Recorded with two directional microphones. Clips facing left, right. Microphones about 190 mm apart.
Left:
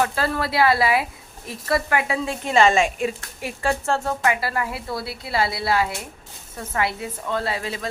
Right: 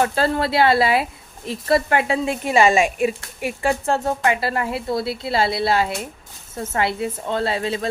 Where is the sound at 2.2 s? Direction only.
15° right (ahead or behind).